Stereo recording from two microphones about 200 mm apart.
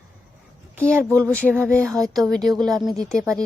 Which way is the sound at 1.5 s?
Centre (ahead or behind).